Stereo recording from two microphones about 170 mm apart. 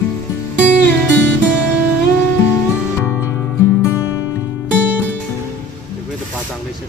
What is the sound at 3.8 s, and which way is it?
Music, 15° left (ahead or behind).